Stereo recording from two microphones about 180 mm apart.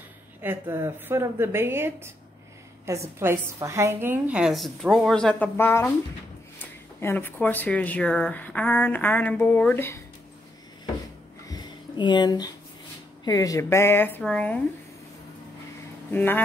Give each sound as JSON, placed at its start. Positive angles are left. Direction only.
{"t": 0.4, "sound": "a woman's voice", "side_deg": -10}
{"t": 11.4, "sound": "a sound", "side_deg": 25}
{"t": 13.2, "sound": "speech", "side_deg": 20}
{"t": 16.1, "sound": "speech", "side_deg": 10}